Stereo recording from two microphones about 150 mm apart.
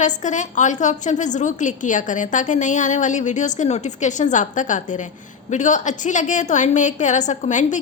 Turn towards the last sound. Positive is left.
turn(degrees=55)  # may be behind; listen again after turning